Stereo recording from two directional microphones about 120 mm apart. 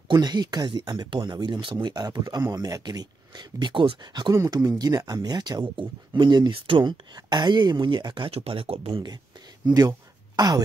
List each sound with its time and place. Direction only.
0.1 s speech: 35° right (ahead or behind)
8.3 s speech: 55° right (ahead or behind)
9.8 s a sound: 35° right (ahead or behind)